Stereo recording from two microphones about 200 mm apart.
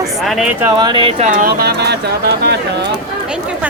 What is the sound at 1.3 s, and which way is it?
Speech, 50° right (ahead or behind).